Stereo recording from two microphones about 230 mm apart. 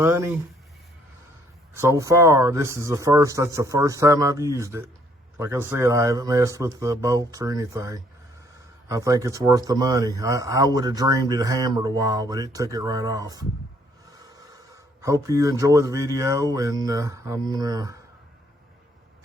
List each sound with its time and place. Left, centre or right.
0.0 s speech: centre
1.8 s speech: centre
14.2 s a sound: centre
15.0 s speech: centre